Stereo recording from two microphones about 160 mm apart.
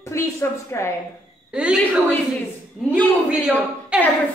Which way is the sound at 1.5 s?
5° right (ahead or behind).